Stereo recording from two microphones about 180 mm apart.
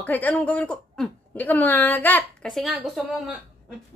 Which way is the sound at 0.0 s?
10° left (ahead or behind).